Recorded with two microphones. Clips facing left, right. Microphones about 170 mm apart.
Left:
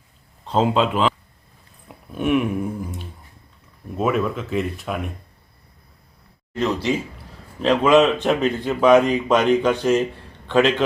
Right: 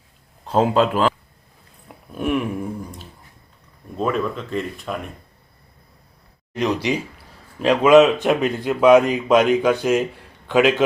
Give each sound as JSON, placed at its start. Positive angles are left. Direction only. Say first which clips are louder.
{"t": 0.4, "sound": "speech", "louder": "right 2 dB", "side_deg": -5}
{"t": 1.9, "sound": "a sound", "louder": "left 2 dB", "side_deg": 0}
{"t": 3.9, "sound": "speech", "louder": "left 1 dB", "side_deg": 5}
{"t": 6.6, "sound": "a man's voice", "louder": "even", "side_deg": -15}